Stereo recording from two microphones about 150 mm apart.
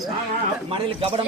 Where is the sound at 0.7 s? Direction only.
35° right (ahead or behind).